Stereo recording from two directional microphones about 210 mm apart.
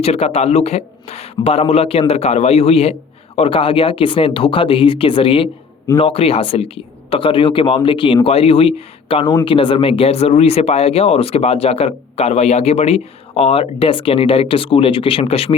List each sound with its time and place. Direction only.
0.0 s speech: 30° left (ahead or behind)